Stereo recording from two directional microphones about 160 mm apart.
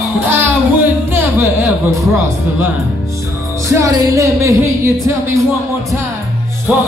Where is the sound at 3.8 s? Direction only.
20° right (ahead or behind).